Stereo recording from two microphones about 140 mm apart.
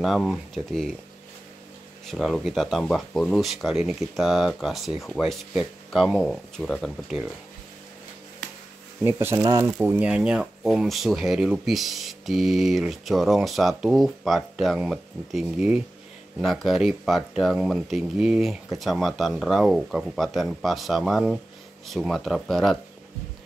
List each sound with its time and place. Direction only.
0.0 s speech: centre (ahead or behind)
2.0 s speech: centre (ahead or behind)
9.0 s speech: 15° right (ahead or behind)
9.8 s speech: 10° right (ahead or behind)